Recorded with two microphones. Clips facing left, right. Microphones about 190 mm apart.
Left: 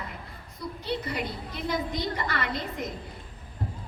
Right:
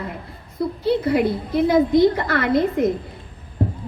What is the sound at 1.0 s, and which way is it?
A woman's voice, 55° right (ahead or behind).